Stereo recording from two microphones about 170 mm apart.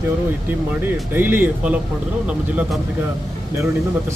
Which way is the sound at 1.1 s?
10° right (ahead or behind).